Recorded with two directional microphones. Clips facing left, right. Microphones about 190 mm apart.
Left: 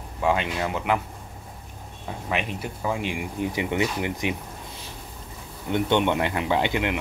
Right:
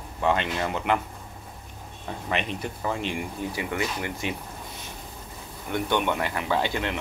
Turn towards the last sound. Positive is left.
turn(degrees=20)  # may be behind; listen again after turning